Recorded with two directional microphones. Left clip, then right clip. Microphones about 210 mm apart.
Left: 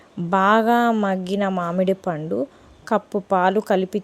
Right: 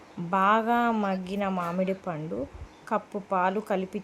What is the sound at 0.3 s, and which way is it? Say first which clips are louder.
A woman's voice: left 6 dB; 30° left (ahead or behind).